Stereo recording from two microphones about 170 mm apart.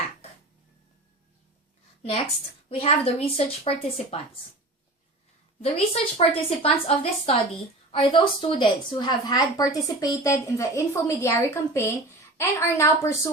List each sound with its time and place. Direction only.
2.6 s a woman's voice: 35° left (ahead or behind)
5.6 s a woman's voice: 35° left (ahead or behind); by 13.1 s 15° left (ahead or behind)